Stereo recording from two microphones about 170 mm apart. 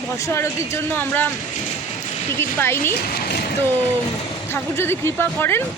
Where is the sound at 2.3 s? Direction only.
15° left (ahead or behind).